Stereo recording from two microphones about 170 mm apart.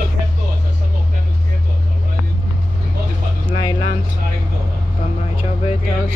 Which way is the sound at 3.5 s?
25° left (ahead or behind).